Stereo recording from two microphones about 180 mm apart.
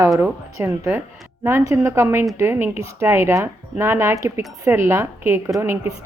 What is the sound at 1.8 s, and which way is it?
A woman's voice, 15° right (ahead or behind).